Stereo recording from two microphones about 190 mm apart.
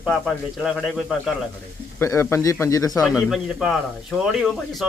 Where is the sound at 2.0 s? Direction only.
15° left (ahead or behind).